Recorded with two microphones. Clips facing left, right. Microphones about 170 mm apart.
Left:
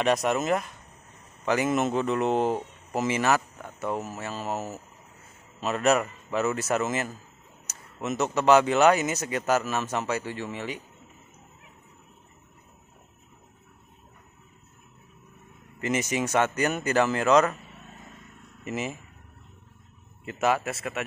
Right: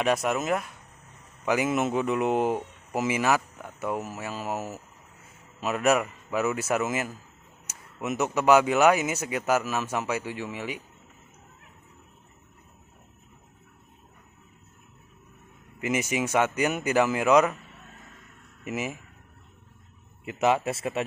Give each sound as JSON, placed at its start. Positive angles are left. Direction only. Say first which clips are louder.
{"t": 0.0, "sound": "speech", "louder": "left 1 dB", "side_deg": -5}
{"t": 15.8, "sound": "speech", "louder": "even", "side_deg": -10}
{"t": 18.6, "sound": "speech", "louder": "even", "side_deg": -10}
{"t": 20.2, "sound": "a man's voice", "louder": "right 2 dB", "side_deg": -20}